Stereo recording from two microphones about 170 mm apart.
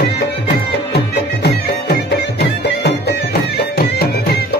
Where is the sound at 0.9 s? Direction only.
85° left.